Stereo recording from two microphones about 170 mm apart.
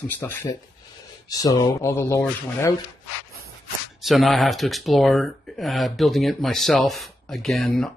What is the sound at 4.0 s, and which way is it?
Speech, centre (ahead or behind).